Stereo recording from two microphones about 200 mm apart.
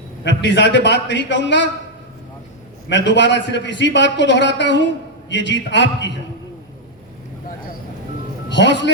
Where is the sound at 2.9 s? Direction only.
60° left (ahead or behind).